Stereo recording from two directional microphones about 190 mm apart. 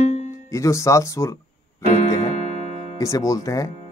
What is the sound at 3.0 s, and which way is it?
Speech, 15° left (ahead or behind).